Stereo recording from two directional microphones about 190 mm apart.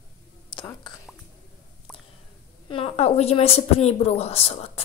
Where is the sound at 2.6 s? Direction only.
25° left (ahead or behind).